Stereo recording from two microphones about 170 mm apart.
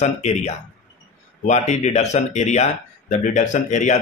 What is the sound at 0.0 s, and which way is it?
Speech, 40° left (ahead or behind).